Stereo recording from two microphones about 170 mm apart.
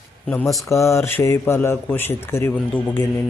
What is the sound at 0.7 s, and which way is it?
Speech, 15° left (ahead or behind).